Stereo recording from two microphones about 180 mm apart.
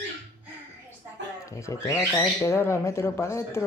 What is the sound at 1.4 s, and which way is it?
Speech, 15° left (ahead or behind).